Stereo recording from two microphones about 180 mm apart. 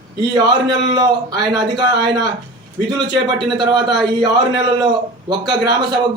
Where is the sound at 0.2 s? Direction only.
25° right (ahead or behind).